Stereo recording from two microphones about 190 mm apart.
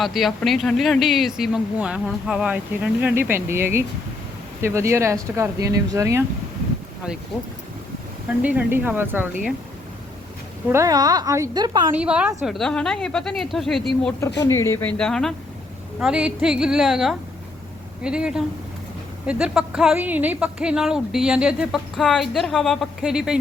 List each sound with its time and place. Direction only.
0.0 s speech: centre (ahead or behind); by 6.2 s 15° right (ahead or behind)
8.4 s speech: 10° right (ahead or behind)
10.7 s a woman's voice: 15° right (ahead or behind)
11.9 s speech: 5° right (ahead or behind)
14.3 s speech: 15° left (ahead or behind); by 23.4 s 5° right (ahead or behind)